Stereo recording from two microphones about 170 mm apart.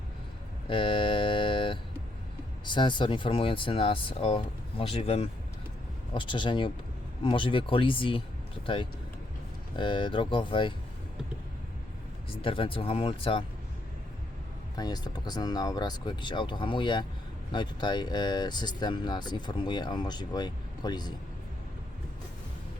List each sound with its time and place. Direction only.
0.7 s a sound: 30° left (ahead or behind)
2.6 s speech: 25° left (ahead or behind)
12.3 s speech: 30° left (ahead or behind)
14.8 s speech: 25° left (ahead or behind)